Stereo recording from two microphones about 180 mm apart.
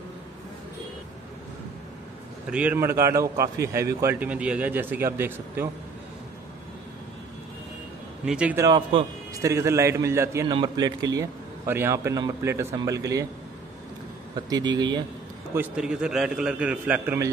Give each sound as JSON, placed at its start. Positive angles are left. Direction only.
{"t": 2.5, "sound": "a man's voice", "side_deg": -10}
{"t": 8.3, "sound": "a man's voice", "side_deg": -5}
{"t": 8.6, "sound": "a man's voice", "side_deg": -20}
{"t": 14.3, "sound": "a man's voice", "side_deg": -20}
{"t": 15.5, "sound": "a man's voice", "side_deg": -10}